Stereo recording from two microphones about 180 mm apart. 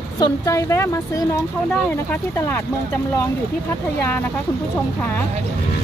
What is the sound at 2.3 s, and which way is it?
Speech, 15° left (ahead or behind).